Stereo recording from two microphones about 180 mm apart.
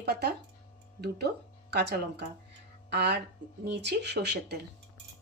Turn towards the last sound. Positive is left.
turn(degrees=-65)  # may be behind; listen again after turning